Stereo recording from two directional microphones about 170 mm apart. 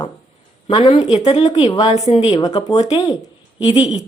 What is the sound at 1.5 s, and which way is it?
Speech, 25° left (ahead or behind).